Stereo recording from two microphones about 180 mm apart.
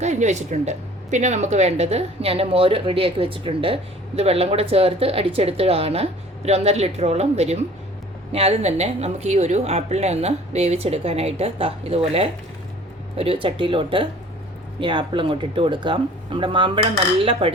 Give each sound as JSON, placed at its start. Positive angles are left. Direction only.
{"t": 0.0, "sound": "speech", "side_deg": -40}